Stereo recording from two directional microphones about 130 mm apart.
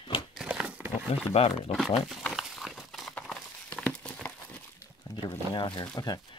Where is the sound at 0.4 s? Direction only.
5° right (ahead or behind).